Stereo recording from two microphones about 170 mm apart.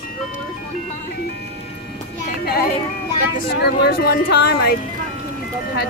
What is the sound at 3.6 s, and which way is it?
Speech, 65° left (ahead or behind).